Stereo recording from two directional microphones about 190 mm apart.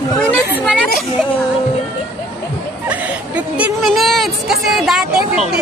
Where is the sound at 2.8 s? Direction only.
5° right (ahead or behind).